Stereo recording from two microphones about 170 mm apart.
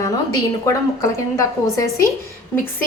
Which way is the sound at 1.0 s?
20° left (ahead or behind).